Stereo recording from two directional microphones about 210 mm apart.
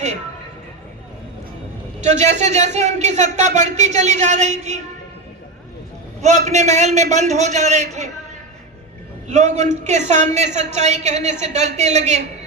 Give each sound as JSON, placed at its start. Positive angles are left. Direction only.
{"t": 2.0, "sound": "a man's voice", "side_deg": -35}
{"t": 6.2, "sound": "a man's voice", "side_deg": -35}
{"t": 9.2, "sound": "a man's voice", "side_deg": -35}